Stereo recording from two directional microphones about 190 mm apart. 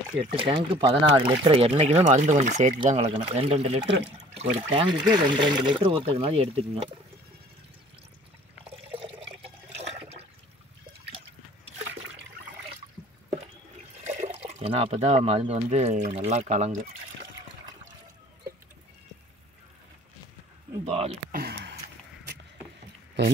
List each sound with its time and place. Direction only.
0.2 s speech: 25° right (ahead or behind); by 2.7 s 40° right (ahead or behind)
3.1 s speech: 30° right (ahead or behind)
8.6 s water: 30° right (ahead or behind)
14.0 s speech: 35° right (ahead or behind)
20.8 s speech: 30° right (ahead or behind)
21.3 s a sound: 50° right (ahead or behind)